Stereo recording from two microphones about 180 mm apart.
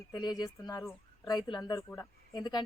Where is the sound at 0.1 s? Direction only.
25° left (ahead or behind).